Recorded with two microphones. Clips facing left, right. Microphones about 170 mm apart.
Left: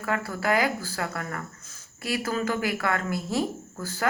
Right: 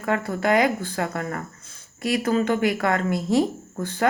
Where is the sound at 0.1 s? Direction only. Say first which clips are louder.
Right 5 dB; 25° right (ahead or behind).